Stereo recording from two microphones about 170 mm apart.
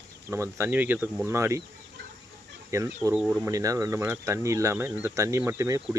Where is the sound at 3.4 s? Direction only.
20° right (ahead or behind).